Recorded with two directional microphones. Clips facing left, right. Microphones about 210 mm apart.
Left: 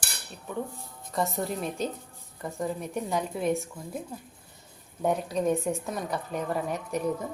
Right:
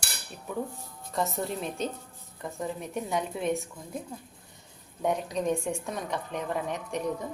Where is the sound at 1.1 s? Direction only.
Centre (ahead or behind).